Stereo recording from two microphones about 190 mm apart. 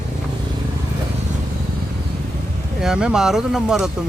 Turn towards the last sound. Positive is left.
turn(degrees=-5)  # may be behind; listen again after turning